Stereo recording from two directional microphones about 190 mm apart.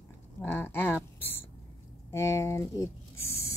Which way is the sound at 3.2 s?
15° left (ahead or behind).